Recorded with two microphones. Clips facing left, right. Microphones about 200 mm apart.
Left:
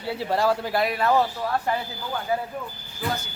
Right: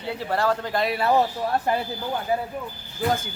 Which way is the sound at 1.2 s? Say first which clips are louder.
Right 1 dB; 25° right (ahead or behind).